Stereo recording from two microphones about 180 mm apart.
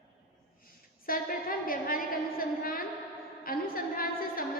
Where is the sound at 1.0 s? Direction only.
55° left (ahead or behind).